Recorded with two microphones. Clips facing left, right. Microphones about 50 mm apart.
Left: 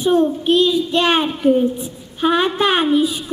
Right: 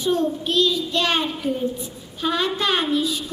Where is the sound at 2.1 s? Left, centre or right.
Left.